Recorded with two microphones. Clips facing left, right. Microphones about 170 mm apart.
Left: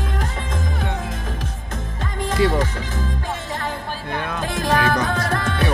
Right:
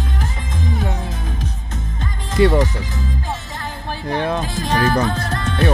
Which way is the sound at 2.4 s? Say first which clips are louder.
Right 5 dB; 55° right (ahead or behind).